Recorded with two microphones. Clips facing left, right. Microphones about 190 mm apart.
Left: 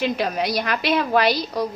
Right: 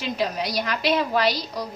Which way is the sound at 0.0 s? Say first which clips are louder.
Left 4 dB; 60° left (ahead or behind).